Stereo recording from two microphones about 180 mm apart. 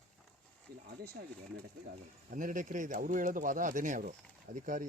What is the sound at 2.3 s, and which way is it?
Speech, 45° right (ahead or behind).